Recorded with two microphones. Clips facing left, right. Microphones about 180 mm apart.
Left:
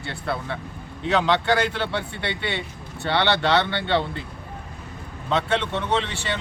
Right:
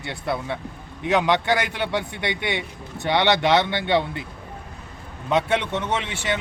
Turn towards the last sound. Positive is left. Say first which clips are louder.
# even
turn(degrees=-15)  # may be behind; listen again after turning